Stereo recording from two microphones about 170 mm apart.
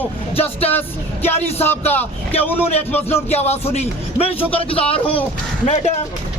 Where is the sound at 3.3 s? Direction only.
40° left (ahead or behind).